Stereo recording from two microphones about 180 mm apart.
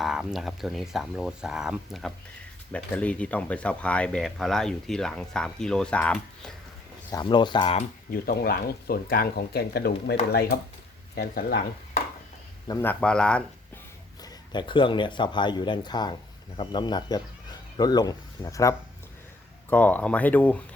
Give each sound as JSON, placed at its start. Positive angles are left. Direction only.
{"t": 0.0, "sound": "speech", "side_deg": -5}
{"t": 7.1, "sound": "speech", "side_deg": 25}
{"t": 8.1, "sound": "speech", "side_deg": 60}
{"t": 11.2, "sound": "speech", "side_deg": 55}
{"t": 12.6, "sound": "speech", "side_deg": 15}
{"t": 14.2, "sound": "speech", "side_deg": 25}